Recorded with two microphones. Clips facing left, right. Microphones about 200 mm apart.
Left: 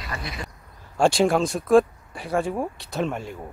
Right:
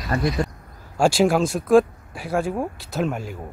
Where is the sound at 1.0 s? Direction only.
Centre (ahead or behind).